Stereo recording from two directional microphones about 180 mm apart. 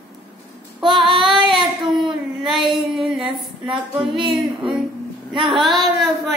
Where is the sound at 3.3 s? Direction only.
30° right (ahead or behind).